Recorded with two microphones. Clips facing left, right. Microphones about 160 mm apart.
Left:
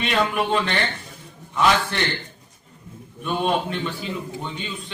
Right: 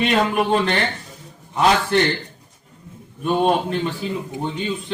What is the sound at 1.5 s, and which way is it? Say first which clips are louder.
Speech: right 3 dB; 40° right (ahead or behind).